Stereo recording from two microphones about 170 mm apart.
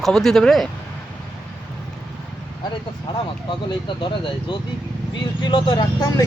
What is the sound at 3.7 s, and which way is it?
Speech, 30° left (ahead or behind).